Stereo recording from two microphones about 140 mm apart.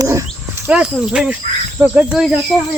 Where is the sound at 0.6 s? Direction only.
5° right (ahead or behind).